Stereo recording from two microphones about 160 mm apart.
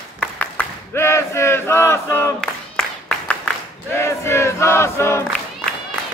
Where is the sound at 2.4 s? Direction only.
5° left (ahead or behind).